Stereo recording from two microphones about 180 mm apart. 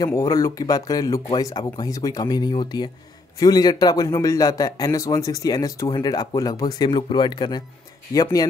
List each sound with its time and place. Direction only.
0.0 s speech: 15° left (ahead or behind)